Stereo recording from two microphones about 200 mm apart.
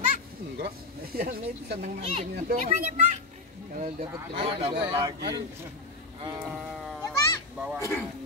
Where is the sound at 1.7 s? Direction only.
30° right (ahead or behind).